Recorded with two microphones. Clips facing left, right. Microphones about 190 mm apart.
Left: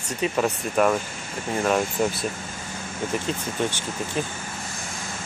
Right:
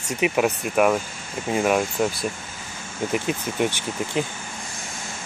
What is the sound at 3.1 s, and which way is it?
Speech, 15° right (ahead or behind).